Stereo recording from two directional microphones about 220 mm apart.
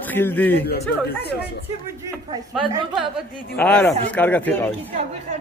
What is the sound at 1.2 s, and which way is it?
Speech, 45° left (ahead or behind).